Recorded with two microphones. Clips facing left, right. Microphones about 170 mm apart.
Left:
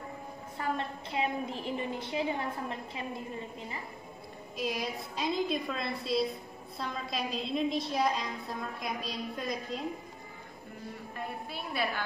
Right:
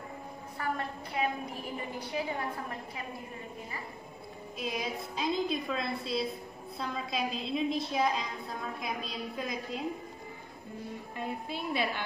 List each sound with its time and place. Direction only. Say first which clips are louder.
0.6 s a woman's voice: left 1 dB; 25° left (ahead or behind)
4.6 s a woman's voice: left 1 dB; centre (ahead or behind)
11.4 s a woman's voice: right 1 dB; 20° right (ahead or behind)